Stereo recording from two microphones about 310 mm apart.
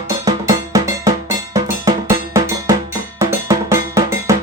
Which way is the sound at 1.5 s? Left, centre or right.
Centre.